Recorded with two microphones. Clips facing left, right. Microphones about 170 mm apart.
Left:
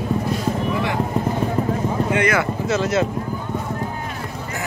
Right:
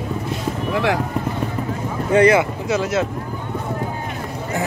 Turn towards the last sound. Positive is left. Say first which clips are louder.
# even
turn(degrees=-5)  # may be behind; listen again after turning